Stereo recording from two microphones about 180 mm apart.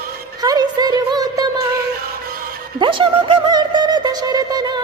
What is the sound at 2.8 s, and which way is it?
Music, 30° right (ahead or behind).